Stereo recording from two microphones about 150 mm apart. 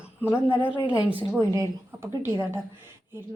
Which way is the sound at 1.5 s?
20° right (ahead or behind).